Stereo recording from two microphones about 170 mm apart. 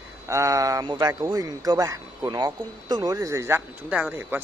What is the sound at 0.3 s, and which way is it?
Speech, 20° right (ahead or behind).